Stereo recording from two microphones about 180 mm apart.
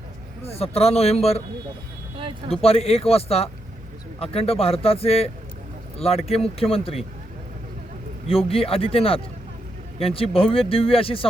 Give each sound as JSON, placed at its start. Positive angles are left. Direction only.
{"t": 0.4, "sound": "speech", "side_deg": 35}
{"t": 2.5, "sound": "speech", "side_deg": 35}
{"t": 8.3, "sound": "speech", "side_deg": 30}